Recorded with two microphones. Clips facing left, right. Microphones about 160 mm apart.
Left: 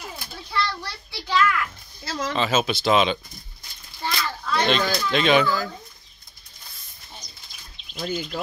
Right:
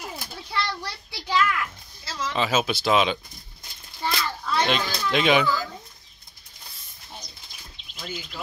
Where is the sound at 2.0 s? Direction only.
45° left (ahead or behind).